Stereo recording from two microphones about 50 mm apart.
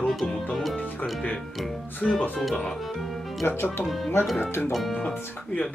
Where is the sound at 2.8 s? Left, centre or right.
Centre.